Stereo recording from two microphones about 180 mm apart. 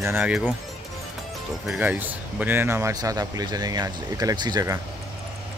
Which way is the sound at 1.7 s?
10° right (ahead or behind).